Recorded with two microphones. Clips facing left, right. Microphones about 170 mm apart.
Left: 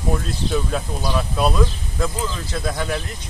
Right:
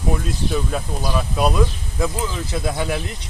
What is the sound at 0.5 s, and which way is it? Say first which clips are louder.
Speech: left 3 dB; centre (ahead or behind).